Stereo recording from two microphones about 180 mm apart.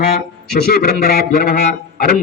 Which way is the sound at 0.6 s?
60° left (ahead or behind).